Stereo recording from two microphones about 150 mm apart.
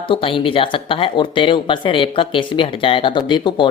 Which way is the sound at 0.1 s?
35° left (ahead or behind).